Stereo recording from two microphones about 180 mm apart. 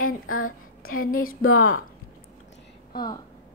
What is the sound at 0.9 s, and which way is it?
Speech, 50° left (ahead or behind).